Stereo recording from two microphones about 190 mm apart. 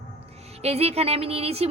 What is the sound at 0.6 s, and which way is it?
Music, 35° right (ahead or behind).